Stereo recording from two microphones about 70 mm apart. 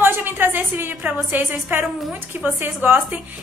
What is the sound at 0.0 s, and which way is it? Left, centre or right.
A woman's voice, right.